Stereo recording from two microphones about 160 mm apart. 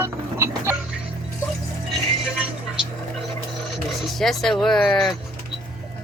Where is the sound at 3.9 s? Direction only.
Centre (ahead or behind).